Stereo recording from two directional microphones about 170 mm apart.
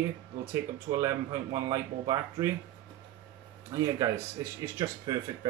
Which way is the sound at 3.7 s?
20° right (ahead or behind).